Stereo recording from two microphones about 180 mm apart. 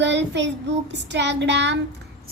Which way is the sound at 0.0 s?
80° right.